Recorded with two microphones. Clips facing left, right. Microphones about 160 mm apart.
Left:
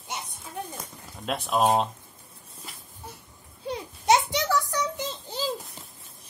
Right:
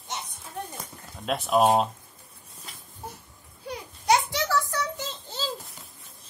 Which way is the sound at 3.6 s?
25° left (ahead or behind).